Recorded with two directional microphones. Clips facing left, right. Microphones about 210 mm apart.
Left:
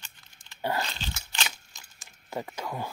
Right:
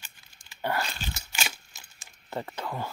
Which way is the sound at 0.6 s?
20° left (ahead or behind).